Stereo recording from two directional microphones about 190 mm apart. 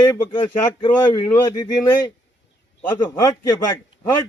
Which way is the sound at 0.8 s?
20° left (ahead or behind).